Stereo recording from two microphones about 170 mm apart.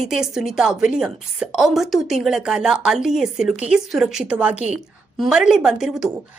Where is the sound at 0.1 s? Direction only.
5° right (ahead or behind).